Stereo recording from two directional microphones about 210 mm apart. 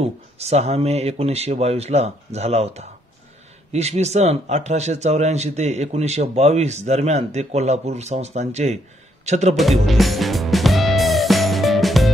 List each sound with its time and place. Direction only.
0.0 s speech: 30° right (ahead or behind)
9.6 s music: centre (ahead or behind)